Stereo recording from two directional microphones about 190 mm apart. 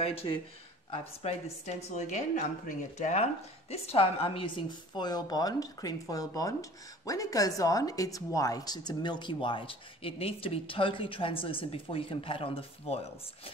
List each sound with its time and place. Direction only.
0.0 s a woman's voice: 30° left (ahead or behind)